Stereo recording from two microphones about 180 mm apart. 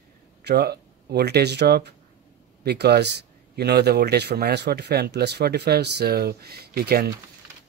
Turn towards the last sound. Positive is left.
turn(degrees=-60)  # may be behind; listen again after turning